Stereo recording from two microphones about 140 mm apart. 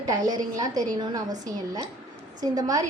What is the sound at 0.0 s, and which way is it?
A woman's voice, 25° right (ahead or behind).